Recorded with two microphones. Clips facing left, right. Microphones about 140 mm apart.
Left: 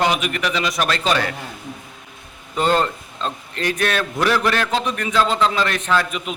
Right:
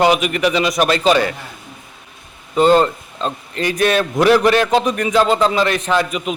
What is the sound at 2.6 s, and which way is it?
A man's voice, 5° right (ahead or behind).